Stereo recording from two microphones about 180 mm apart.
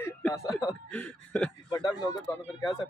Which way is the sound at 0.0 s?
15° left (ahead or behind).